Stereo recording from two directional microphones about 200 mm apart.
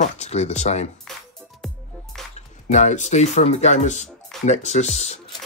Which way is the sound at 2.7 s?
35° left (ahead or behind).